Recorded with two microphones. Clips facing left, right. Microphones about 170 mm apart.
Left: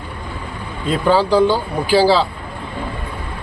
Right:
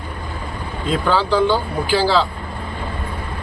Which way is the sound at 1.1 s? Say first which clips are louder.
Left 3 dB; 40° left (ahead or behind).